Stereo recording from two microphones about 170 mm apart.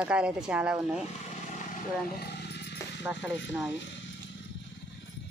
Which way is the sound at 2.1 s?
75° left (ahead or behind).